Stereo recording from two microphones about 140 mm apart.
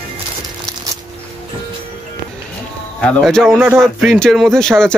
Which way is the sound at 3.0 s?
5° left (ahead or behind).